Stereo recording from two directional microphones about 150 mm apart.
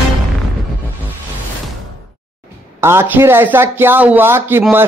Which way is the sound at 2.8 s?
15° right (ahead or behind).